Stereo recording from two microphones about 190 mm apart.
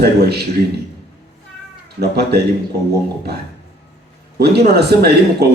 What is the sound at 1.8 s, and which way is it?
Speech, 60° right (ahead or behind).